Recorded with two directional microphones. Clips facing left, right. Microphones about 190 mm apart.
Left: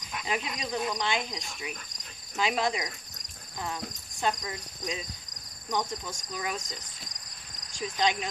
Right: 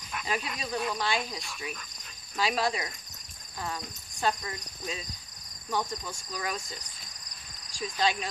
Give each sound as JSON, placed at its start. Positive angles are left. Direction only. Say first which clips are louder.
{"t": 0.1, "sound": "speech", "louder": "left 1 dB", "side_deg": 20}
{"t": 7.7, "sound": "speech", "louder": "left 1 dB", "side_deg": 20}